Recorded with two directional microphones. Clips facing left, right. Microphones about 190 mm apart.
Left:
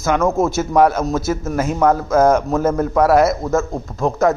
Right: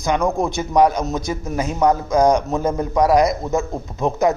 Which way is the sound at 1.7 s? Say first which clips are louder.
Left 1 dB; 15° right (ahead or behind).